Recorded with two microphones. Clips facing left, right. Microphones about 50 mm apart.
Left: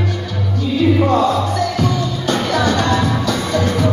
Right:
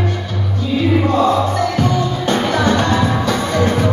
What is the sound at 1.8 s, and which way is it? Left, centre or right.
Music, right.